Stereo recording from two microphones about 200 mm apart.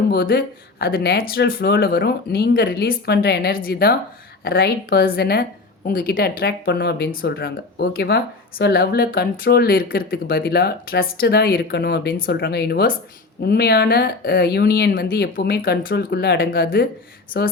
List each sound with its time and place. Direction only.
0.1 s a woman's voice: 50° left (ahead or behind)